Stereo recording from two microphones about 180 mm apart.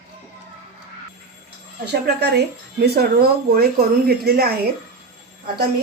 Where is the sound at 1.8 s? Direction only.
65° right (ahead or behind).